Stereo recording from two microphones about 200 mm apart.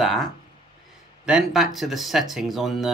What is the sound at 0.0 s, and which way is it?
Speech, centre (ahead or behind).